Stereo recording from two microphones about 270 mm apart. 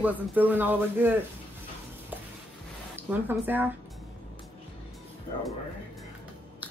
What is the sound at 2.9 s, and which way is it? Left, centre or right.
Speech, centre.